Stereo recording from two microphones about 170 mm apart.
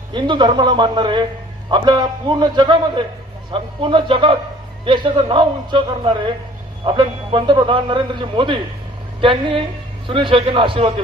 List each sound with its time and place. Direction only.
0.1 s a man's voice: 25° right (ahead or behind)